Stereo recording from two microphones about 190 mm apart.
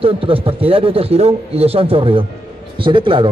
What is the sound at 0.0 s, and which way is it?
A man's voice, 30° right (ahead or behind).